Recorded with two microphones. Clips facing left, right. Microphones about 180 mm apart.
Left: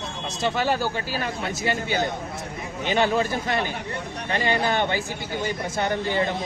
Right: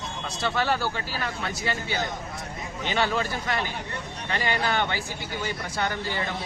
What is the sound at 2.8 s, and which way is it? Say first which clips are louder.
Speech: left 4 dB; 15° left (ahead or behind).